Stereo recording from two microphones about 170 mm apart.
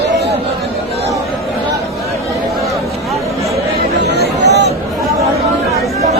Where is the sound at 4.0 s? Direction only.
80° right.